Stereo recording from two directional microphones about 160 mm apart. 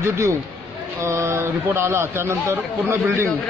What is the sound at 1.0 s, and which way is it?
A man's voice, 15° right (ahead or behind).